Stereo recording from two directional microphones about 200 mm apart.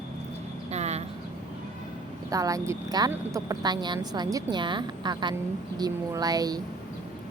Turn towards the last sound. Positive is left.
turn(degrees=-20)  # may be behind; listen again after turning